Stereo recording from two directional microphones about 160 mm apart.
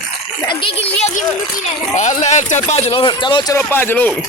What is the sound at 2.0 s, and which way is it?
Speech, 45° left (ahead or behind).